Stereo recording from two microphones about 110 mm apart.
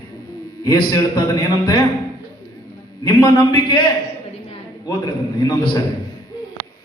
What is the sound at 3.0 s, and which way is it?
Speech, 40° left (ahead or behind).